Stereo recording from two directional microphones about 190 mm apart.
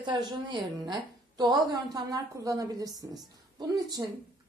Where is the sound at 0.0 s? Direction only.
20° right (ahead or behind).